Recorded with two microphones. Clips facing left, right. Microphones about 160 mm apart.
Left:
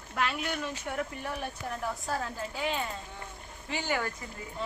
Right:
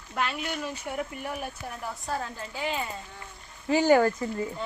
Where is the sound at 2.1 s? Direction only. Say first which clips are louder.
Right 1 dB; centre (ahead or behind).